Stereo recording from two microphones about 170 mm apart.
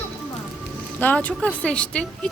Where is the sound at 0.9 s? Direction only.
10° left (ahead or behind).